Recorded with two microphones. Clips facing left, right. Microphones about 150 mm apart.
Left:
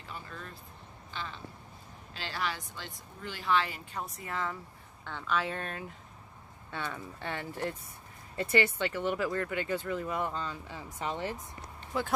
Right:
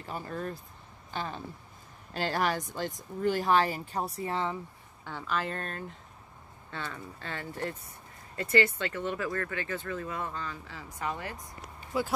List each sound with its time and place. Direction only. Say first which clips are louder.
0.0 s speech: right 8 dB; 45° right (ahead or behind); by 4.6 s 30° right (ahead or behind)
5.0 s speech: even; 5° right (ahead or behind); by 11.2 s 25° left (ahead or behind)
11.8 s a sound: right 2 dB; 5° right (ahead or behind)